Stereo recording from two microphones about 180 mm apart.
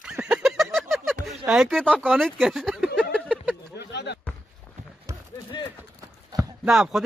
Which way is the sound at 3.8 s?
70° left (ahead or behind).